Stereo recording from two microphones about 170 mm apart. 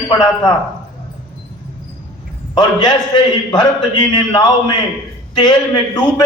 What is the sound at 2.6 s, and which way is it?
A man's voice, 25° left (ahead or behind).